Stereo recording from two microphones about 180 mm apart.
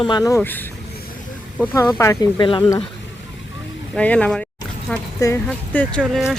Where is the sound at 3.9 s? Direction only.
5° left (ahead or behind).